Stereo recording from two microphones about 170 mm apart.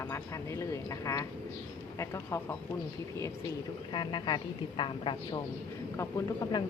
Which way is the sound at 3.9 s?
25° left (ahead or behind).